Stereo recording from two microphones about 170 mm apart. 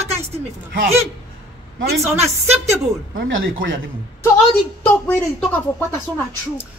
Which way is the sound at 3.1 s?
60° right (ahead or behind).